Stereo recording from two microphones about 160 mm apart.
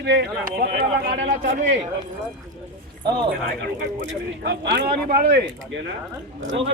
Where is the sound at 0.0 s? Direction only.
90° right; by 0.9 s 70° right (ahead or behind).